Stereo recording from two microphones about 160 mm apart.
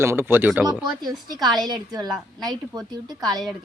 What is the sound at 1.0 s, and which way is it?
A woman's voice, 25° right (ahead or behind).